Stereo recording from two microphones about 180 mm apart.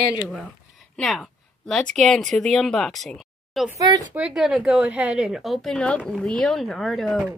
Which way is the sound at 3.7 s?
20° right (ahead or behind).